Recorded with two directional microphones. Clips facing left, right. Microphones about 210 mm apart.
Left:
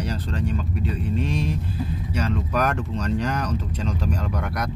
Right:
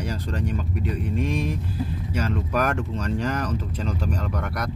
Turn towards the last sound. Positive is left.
turn(degrees=0)  # may be behind; listen again after turning